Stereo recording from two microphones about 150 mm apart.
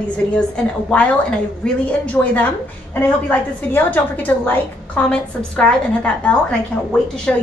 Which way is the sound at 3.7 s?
10° left (ahead or behind).